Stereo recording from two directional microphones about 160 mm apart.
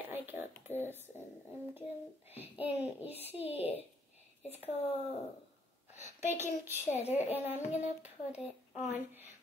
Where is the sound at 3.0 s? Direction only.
40° left (ahead or behind).